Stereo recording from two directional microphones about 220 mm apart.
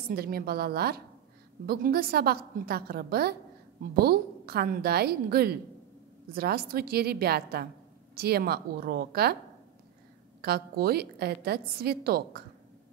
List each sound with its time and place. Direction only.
0.1 s a woman's voice: 45° right (ahead or behind)
10.4 s a woman's voice: 45° right (ahead or behind)